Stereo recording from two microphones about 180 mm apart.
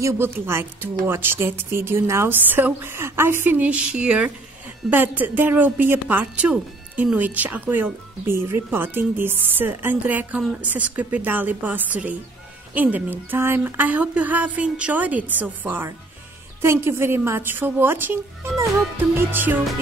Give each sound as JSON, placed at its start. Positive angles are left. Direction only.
{"t": 0.0, "sound": "speech", "side_deg": -15}